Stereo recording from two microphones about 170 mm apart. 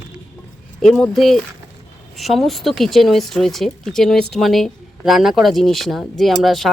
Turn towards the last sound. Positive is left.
turn(degrees=0)  # may be behind; listen again after turning